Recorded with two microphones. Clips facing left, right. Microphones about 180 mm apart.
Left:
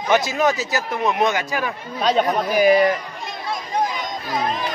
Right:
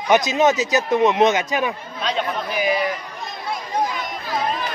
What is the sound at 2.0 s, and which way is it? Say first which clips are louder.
Speech: left 6 dB; 45° left (ahead or behind).